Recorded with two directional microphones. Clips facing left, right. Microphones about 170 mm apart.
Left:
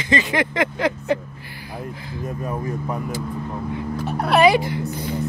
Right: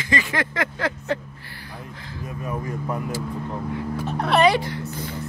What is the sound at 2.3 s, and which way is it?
Speech, 35° left (ahead or behind).